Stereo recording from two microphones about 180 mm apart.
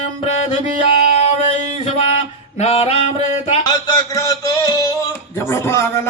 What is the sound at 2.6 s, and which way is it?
Male singing, 35° left (ahead or behind).